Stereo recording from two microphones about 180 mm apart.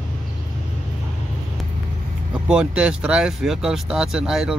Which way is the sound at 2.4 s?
5° right (ahead or behind).